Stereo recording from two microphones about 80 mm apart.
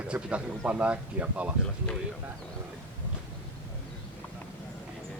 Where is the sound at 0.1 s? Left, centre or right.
Centre.